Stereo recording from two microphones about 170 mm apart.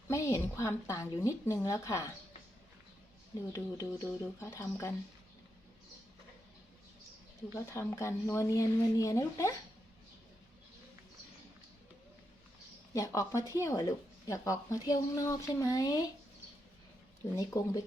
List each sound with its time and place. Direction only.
0.1 s a woman's voice: 20° left (ahead or behind)
3.5 s a woman's voice: 20° left (ahead or behind)
7.5 s a woman's voice: 15° left (ahead or behind)
12.9 s speech: 20° left (ahead or behind)
17.3 s a woman's voice: 15° left (ahead or behind)